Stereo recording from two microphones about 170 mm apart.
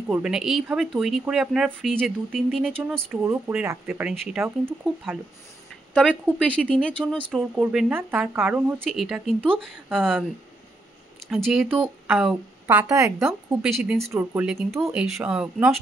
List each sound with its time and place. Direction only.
0.1 s speech: 5° right (ahead or behind)
2.9 s speech: 10° right (ahead or behind)
4.1 s speech: 5° left (ahead or behind)
4.4 s speech: 10° right (ahead or behind)
6.4 s speech: 5° left (ahead or behind)
7.3 s speech: 5° right (ahead or behind)
11.2 s speech: centre (ahead or behind); by 13.3 s 20° right (ahead or behind)
13.6 s speech: centre (ahead or behind)
14.1 s speech: 10° right (ahead or behind)